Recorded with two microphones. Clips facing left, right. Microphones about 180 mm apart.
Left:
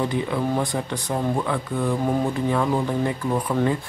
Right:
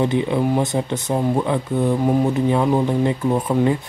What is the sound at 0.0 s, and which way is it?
Speech, 25° right (ahead or behind).